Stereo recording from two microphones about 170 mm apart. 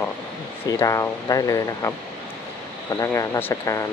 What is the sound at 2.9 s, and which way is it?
Speech, 20° left (ahead or behind).